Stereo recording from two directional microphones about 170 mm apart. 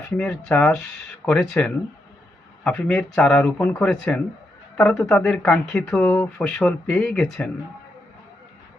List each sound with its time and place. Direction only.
0.2 s speech: 5° left (ahead or behind)